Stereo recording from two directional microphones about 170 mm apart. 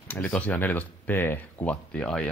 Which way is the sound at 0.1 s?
5° left (ahead or behind).